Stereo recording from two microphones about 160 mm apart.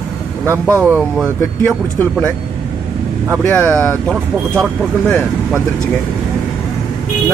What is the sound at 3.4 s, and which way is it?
Speech, 10° left (ahead or behind).